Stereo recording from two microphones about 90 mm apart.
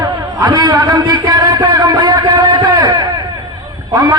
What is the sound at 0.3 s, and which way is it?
A man's voice, 45° right (ahead or behind).